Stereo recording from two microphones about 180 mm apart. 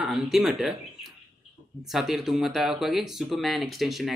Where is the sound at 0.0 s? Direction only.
Centre (ahead or behind).